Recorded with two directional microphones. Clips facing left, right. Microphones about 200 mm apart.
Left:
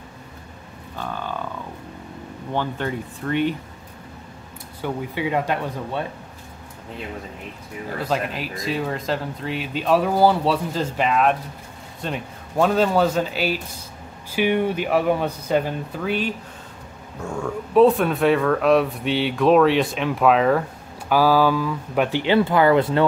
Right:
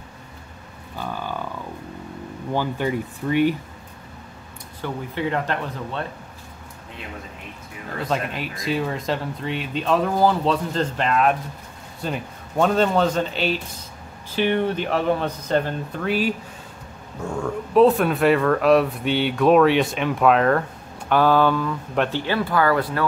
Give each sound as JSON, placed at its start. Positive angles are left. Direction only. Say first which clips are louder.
{"t": 0.9, "sound": "speech", "louder": "even", "side_deg": -10}
{"t": 2.5, "sound": "speech", "louder": "right 2 dB", "side_deg": -10}
{"t": 4.8, "sound": "speech", "louder": "left 1 dB", "side_deg": 10}
{"t": 8.0, "sound": "speech", "louder": "even", "side_deg": 0}
{"t": 22.2, "sound": "speech", "louder": "left 8 dB", "side_deg": 20}